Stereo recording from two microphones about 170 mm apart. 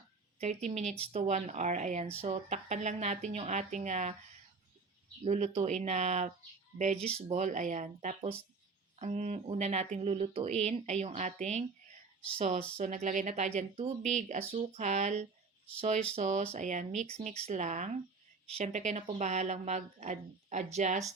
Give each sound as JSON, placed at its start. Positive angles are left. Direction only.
{"t": 0.3, "sound": "a woman's voice", "side_deg": -40}
{"t": 5.2, "sound": "a woman's voice", "side_deg": -40}
{"t": 12.7, "sound": "a woman's voice", "side_deg": -45}